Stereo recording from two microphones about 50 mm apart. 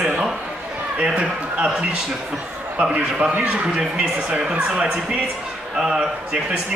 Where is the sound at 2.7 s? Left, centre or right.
Right.